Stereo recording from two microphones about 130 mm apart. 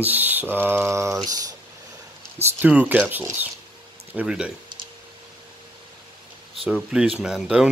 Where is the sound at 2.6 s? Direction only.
10° right (ahead or behind).